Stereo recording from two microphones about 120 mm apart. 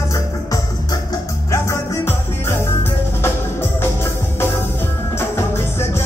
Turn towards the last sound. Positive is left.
turn(degrees=20)  # may be behind; listen again after turning